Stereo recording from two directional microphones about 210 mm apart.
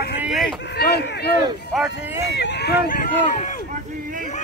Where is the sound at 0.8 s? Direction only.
50° left (ahead or behind).